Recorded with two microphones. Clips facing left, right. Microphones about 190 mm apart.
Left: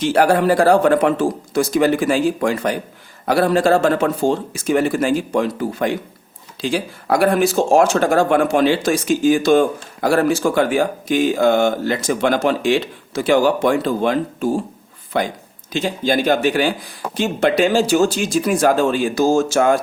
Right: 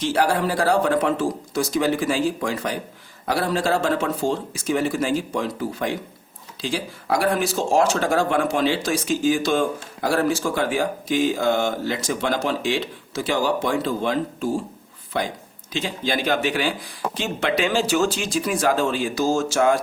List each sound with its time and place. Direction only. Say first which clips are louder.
0.0 s speech: left 6 dB; 60° left (ahead or behind)
15.7 s speech: left 6 dB; 45° left (ahead or behind)